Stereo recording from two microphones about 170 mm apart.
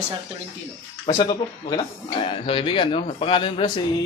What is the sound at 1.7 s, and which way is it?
Speech, 30° left (ahead or behind).